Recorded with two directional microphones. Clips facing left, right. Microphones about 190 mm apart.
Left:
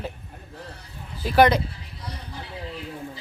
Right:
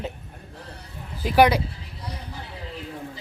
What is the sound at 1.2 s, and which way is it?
Speech, 15° right (ahead or behind).